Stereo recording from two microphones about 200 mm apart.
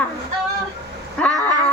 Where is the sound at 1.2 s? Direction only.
5° left (ahead or behind).